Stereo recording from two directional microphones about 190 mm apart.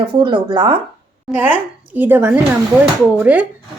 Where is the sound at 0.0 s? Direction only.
25° right (ahead or behind).